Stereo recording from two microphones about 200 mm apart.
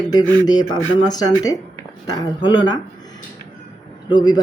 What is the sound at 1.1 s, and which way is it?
Speech, 20° left (ahead or behind).